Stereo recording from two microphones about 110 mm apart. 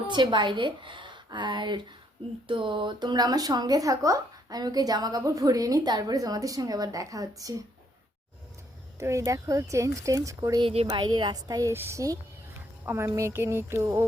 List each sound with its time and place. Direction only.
0.1 s a woman's voice: 45° right (ahead or behind)
9.0 s speech: 25° right (ahead or behind)
10.6 s speech: 60° right (ahead or behind)
10.9 s speech: 45° right (ahead or behind)
11.7 s speech: 25° right (ahead or behind)